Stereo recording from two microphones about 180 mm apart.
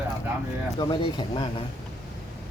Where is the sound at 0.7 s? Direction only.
25° left (ahead or behind).